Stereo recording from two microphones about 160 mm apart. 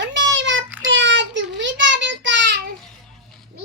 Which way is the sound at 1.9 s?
90° right.